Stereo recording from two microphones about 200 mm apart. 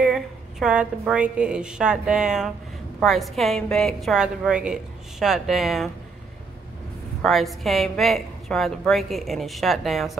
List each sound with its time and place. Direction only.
0.0 s a woman's voice: 5° right (ahead or behind)
7.2 s a woman's voice: centre (ahead or behind)